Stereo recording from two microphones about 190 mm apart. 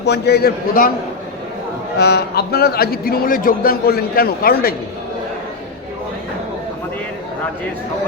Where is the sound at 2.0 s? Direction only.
60° left (ahead or behind).